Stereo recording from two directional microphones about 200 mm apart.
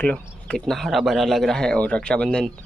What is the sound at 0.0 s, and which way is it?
Speech, 5° left (ahead or behind).